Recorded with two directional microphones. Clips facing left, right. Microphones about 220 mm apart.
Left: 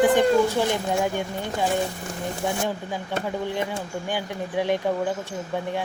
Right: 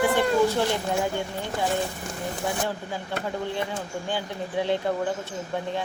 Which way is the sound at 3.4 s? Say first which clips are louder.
Left 2 dB; 15° left (ahead or behind).